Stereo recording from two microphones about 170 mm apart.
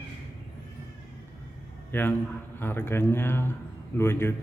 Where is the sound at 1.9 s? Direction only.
10° left (ahead or behind).